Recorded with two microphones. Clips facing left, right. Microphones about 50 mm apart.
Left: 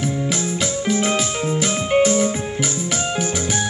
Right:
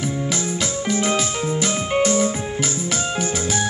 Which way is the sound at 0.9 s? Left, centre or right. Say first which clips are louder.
Right 2 dB; left.